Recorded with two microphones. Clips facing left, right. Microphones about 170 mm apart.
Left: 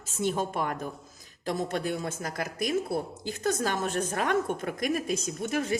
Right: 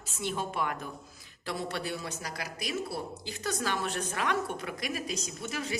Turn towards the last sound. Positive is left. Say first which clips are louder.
# left 7 dB
turn(degrees=50)  # may be behind; listen again after turning